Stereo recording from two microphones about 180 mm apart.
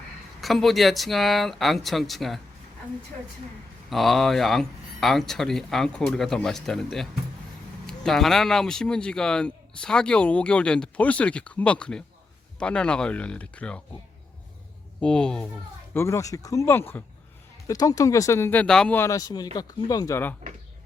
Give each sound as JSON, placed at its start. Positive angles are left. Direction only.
{"t": 0.4, "sound": "speech", "side_deg": 0}
{"t": 3.8, "sound": "speech", "side_deg": 0}
{"t": 15.0, "sound": "speech", "side_deg": 5}
{"t": 16.0, "sound": "speech", "side_deg": 15}